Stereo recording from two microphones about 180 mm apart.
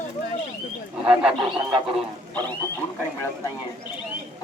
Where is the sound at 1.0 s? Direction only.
5° right (ahead or behind).